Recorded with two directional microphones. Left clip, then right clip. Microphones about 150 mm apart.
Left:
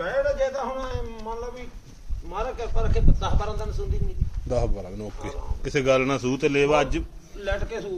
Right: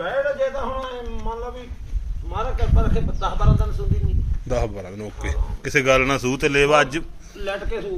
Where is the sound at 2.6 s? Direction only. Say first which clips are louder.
Right 2 dB; 25° left (ahead or behind).